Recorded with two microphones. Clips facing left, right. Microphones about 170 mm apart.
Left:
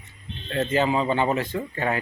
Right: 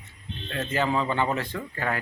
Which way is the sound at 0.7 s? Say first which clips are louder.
Left 3 dB; 20° left (ahead or behind).